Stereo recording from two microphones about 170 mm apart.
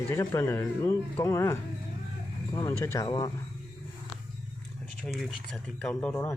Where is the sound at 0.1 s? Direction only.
15° left (ahead or behind).